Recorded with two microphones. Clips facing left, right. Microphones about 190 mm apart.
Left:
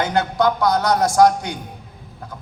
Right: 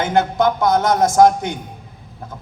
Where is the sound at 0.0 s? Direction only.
20° right (ahead or behind).